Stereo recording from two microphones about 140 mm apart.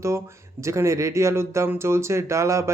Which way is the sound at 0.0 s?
20° right (ahead or behind).